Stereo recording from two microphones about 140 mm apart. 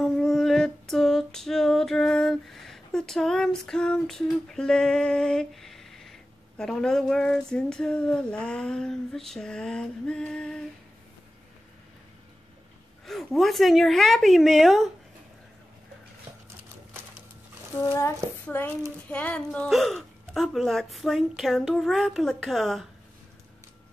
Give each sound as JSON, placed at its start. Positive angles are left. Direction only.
{"t": 0.0, "sound": "female singing", "side_deg": 0}
{"t": 13.0, "sound": "speech", "side_deg": 0}
{"t": 17.7, "sound": "a sound", "side_deg": 20}
{"t": 19.0, "sound": "speech", "side_deg": 10}